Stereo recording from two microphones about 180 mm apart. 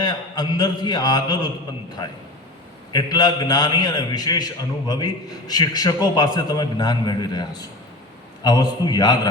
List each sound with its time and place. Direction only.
0.0 s a man's voice: 25° left (ahead or behind)
2.9 s a man's voice: 20° left (ahead or behind)